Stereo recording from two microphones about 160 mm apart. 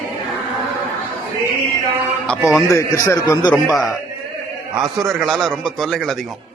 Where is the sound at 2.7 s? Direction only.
20° left (ahead or behind).